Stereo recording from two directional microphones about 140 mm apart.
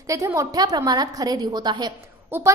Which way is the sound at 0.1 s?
20° right (ahead or behind).